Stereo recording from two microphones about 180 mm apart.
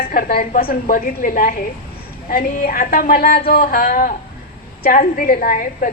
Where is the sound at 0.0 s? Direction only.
55° left (ahead or behind).